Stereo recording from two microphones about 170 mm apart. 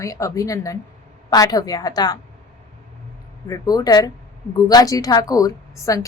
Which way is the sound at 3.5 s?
20° left (ahead or behind).